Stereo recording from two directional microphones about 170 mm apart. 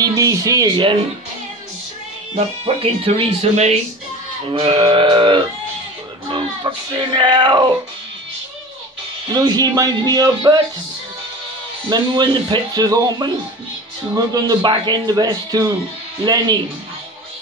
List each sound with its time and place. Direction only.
0.0 s speech: 20° right (ahead or behind)
2.3 s speech: 35° right (ahead or behind)
9.3 s speech: 25° right (ahead or behind)
11.9 s speech: 25° right (ahead or behind)